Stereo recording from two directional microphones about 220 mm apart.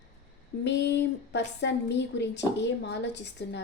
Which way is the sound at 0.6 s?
50° left (ahead or behind).